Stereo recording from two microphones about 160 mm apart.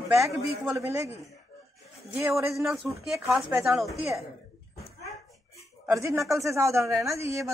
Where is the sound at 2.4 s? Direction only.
Centre (ahead or behind).